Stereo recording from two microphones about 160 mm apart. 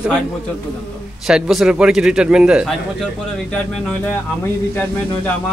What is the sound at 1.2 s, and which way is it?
A man's voice, centre (ahead or behind).